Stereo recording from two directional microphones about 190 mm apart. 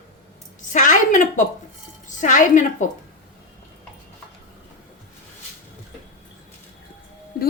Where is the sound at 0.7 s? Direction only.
40° left (ahead or behind).